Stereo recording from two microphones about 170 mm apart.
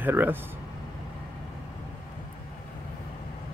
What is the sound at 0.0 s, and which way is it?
Speech, 10° right (ahead or behind).